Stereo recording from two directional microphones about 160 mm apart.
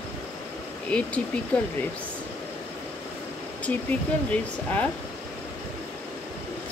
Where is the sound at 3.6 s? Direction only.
10° left (ahead or behind).